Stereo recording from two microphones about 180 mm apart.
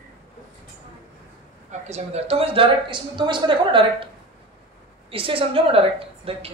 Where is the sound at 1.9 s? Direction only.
35° right (ahead or behind).